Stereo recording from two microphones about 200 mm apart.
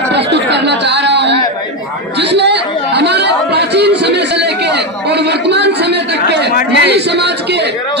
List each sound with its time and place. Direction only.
0.1 s chatter: 60° right (ahead or behind)
6.7 s speech: 60° right (ahead or behind)